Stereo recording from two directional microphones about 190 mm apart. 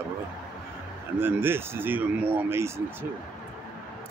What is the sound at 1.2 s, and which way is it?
Speech, 10° right (ahead or behind).